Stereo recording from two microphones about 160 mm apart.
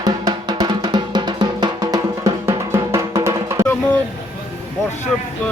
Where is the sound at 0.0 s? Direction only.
25° right (ahead or behind).